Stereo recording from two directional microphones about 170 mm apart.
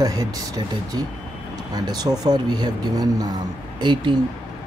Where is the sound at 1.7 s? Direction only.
25° right (ahead or behind).